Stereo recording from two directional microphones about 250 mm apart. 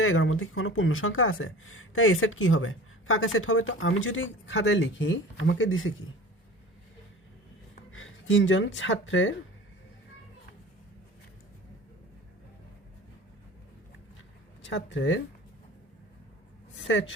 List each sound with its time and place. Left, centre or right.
0.0 s speech: left
7.9 s speech: left
14.6 s speech: left
16.7 s a sound: left